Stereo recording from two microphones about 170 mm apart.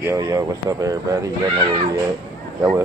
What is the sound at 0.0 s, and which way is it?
Speech, 20° right (ahead or behind).